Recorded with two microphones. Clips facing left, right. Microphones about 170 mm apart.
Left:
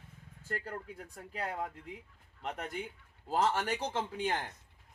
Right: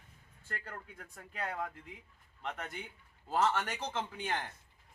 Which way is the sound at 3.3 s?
35° left (ahead or behind).